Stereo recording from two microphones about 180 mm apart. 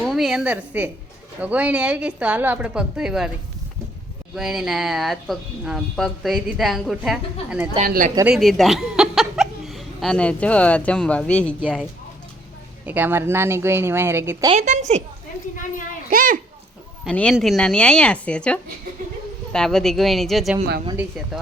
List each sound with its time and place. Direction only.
0.0 s a woman's voice: centre (ahead or behind)
4.4 s speech: centre (ahead or behind)
7.9 s a child's voice: 50° right (ahead or behind)
8.2 s speech: centre (ahead or behind)
11.6 s a woman's voice: 5° right (ahead or behind)
14.5 s a woman's voice: 40° right (ahead or behind)
16.0 s a child's voice: 50° right (ahead or behind)
17.0 s speech: 5° left (ahead or behind)